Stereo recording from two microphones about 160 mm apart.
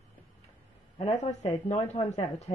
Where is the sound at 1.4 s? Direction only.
45° left (ahead or behind).